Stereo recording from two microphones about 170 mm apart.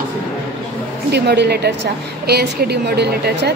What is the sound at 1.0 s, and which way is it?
Speech, 80° right.